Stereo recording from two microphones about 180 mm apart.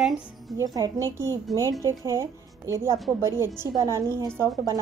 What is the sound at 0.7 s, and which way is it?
A woman's voice, 20° right (ahead or behind).